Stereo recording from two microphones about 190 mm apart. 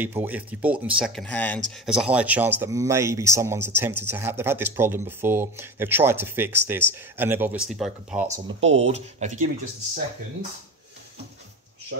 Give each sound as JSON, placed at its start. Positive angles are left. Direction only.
{"t": 0.0, "sound": "speech", "side_deg": -10}
{"t": 1.9, "sound": "speech", "side_deg": -5}
{"t": 8.6, "sound": "speech", "side_deg": -35}